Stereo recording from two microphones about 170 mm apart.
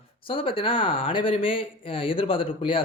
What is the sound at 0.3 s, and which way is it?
Speech, 30° left (ahead or behind).